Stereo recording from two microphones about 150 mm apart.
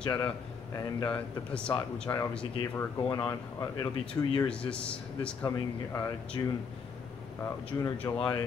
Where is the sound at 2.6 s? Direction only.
25° left (ahead or behind).